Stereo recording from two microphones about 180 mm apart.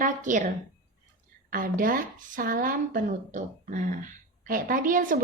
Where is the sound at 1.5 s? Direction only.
50° right (ahead or behind).